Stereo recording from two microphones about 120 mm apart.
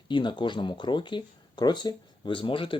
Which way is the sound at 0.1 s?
40° left (ahead or behind).